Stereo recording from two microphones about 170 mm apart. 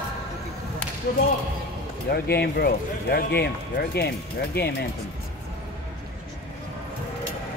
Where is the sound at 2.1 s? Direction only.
70° left (ahead or behind).